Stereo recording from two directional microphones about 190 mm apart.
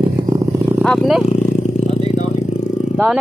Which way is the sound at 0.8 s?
Centre (ahead or behind).